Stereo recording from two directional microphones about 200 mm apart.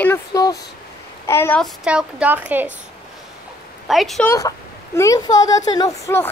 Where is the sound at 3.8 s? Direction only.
Centre (ahead or behind).